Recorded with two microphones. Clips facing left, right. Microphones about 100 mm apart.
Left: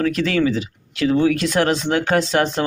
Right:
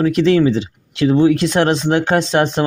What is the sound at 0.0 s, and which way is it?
Speech, 20° right (ahead or behind).